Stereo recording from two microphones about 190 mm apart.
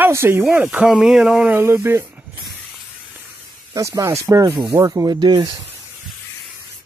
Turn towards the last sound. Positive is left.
turn(degrees=-25)  # may be behind; listen again after turning